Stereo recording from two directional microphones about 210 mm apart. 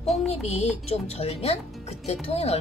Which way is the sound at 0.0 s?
30° left (ahead or behind).